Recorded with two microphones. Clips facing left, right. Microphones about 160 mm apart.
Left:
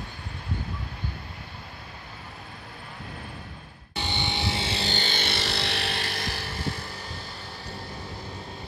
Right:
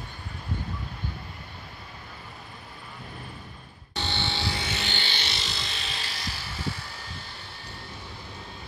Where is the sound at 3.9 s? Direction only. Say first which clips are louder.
Left 1 dB; 15° left (ahead or behind); by 6.4 s 55° left (ahead or behind).